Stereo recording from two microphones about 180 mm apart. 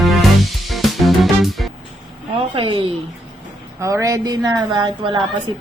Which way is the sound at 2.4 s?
30° right (ahead or behind).